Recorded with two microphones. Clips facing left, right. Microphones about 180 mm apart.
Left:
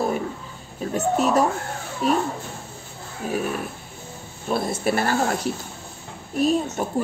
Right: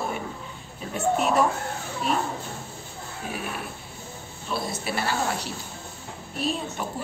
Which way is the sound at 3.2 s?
40° left (ahead or behind).